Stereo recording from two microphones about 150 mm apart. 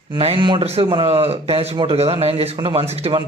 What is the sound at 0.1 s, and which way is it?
A man's voice, 35° right (ahead or behind).